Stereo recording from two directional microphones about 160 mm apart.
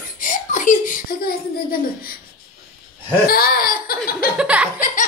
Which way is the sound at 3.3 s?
70° left (ahead or behind).